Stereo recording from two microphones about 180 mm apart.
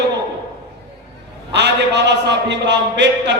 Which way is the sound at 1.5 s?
70° right (ahead or behind).